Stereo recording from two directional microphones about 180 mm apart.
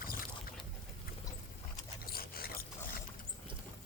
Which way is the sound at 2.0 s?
55° left (ahead or behind).